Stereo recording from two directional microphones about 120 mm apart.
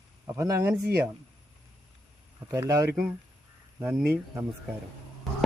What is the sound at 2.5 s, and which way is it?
Speech, 25° right (ahead or behind).